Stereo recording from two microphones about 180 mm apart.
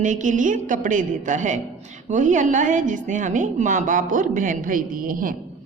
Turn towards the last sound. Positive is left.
turn(degrees=-50)  # may be behind; listen again after turning